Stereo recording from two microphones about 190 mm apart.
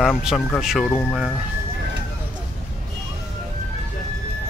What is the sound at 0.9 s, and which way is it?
Speech, 10° left (ahead or behind).